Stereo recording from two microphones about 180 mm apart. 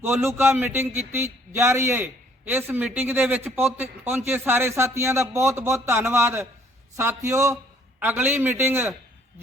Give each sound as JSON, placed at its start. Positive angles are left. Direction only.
{"t": 0.0, "sound": "a man's voice", "side_deg": -15}